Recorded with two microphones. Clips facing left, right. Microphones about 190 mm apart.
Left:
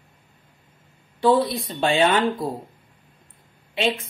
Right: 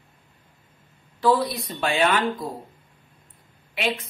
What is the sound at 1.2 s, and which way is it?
Speech, 25° left (ahead or behind).